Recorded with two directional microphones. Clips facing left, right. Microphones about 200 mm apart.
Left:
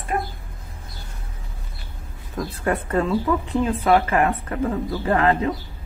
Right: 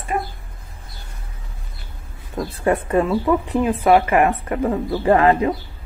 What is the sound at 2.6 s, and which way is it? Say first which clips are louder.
Speech: right 4 dB; 15° right (ahead or behind).